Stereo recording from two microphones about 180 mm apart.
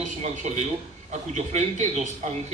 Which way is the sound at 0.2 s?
40° right (ahead or behind).